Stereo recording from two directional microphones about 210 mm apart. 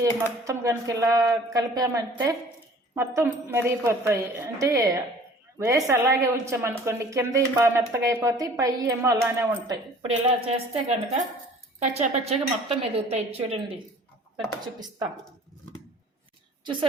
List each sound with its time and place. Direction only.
0.0 s a woman's voice: 15° right (ahead or behind)
11.9 s a woman's voice: 30° right (ahead or behind)